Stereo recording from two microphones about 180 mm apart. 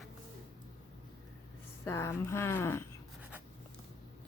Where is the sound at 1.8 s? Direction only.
15° left (ahead or behind).